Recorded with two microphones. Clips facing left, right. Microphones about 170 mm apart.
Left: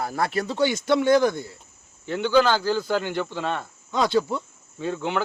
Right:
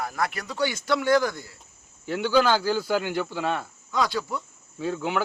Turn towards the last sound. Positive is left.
turn(degrees=-5)  # may be behind; listen again after turning